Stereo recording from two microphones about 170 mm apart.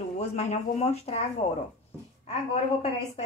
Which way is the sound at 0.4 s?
40° left (ahead or behind).